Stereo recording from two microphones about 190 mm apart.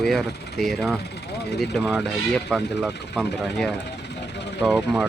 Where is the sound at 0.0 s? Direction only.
Centre (ahead or behind).